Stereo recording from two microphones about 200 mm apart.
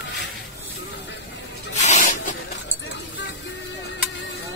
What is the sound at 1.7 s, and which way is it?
Spray, 35° left (ahead or behind).